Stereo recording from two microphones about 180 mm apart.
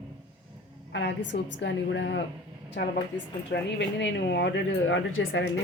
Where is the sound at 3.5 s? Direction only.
80° left.